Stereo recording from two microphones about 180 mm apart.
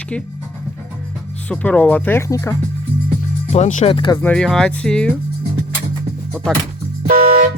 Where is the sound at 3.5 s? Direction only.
40° left (ahead or behind).